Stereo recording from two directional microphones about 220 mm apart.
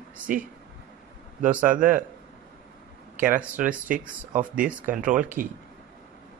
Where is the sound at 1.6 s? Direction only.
35° right (ahead or behind).